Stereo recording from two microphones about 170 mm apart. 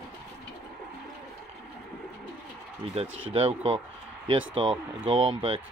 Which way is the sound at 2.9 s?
35° right (ahead or behind).